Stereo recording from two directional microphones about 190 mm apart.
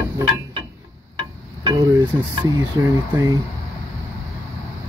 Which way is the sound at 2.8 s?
15° right (ahead or behind).